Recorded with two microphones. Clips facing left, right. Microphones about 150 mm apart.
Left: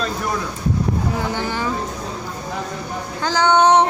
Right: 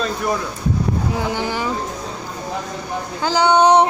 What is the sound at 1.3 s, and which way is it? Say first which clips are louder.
Child singing: right 1 dB; 10° right (ahead or behind).